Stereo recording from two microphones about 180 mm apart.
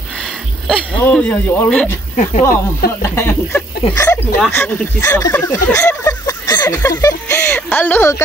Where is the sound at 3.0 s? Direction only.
15° left (ahead or behind).